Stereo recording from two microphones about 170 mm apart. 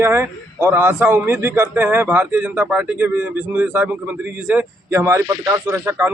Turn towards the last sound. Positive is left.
turn(degrees=-15)  # may be behind; listen again after turning